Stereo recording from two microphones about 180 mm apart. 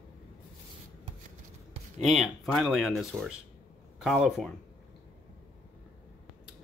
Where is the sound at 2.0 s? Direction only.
Centre (ahead or behind).